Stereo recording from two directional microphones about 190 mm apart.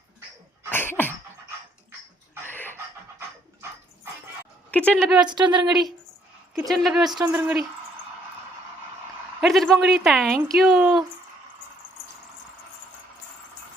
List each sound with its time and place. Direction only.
0.7 s cough: 10° left (ahead or behind)
2.5 s a sound: 10° left (ahead or behind)
2.7 s dog: 10° right (ahead or behind)
4.7 s speech: 5° left (ahead or behind)
5.3 s speech: 25° right (ahead or behind)
5.6 s speech: centre (ahead or behind)
7.0 s speech: 20° right (ahead or behind)
7.3 s speech: 10° right (ahead or behind)
9.4 s speech: centre (ahead or behind)